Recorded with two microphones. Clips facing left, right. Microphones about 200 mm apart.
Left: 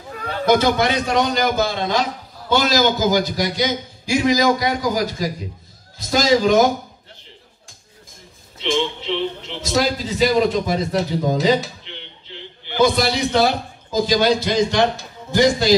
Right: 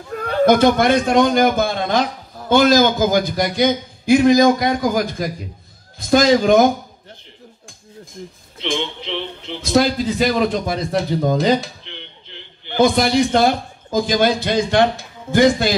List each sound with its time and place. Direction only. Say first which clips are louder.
0.1 s a man's voice: right 3 dB; 50° right (ahead or behind)
9.7 s a man's voice: right 4 dB; 55° right (ahead or behind)
12.7 s a man's voice: right 3 dB; 50° right (ahead or behind)